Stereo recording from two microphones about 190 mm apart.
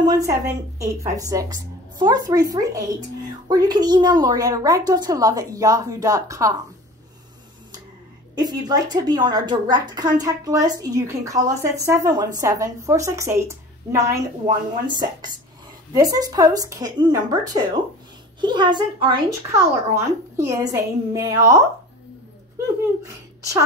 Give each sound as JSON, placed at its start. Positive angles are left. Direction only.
{"t": 0.0, "sound": "a woman's voice", "side_deg": -20}
{"t": 8.4, "sound": "a woman's voice", "side_deg": -20}